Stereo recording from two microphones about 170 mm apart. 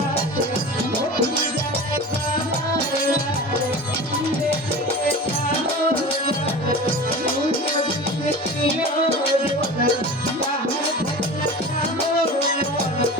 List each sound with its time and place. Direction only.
8.3 s music: 35° left (ahead or behind)